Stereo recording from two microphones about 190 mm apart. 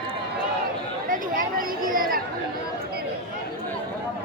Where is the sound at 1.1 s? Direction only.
45° right (ahead or behind).